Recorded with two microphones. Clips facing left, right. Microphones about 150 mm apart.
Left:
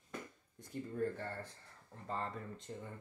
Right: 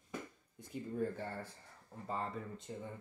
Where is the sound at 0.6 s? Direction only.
5° right (ahead or behind).